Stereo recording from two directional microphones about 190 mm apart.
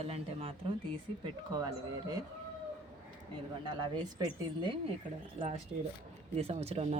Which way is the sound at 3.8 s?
25° right (ahead or behind).